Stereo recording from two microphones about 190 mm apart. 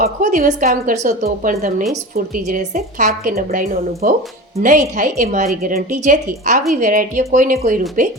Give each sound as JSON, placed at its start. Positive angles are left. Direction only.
{"t": 0.0, "sound": "a woman's voice", "side_deg": -45}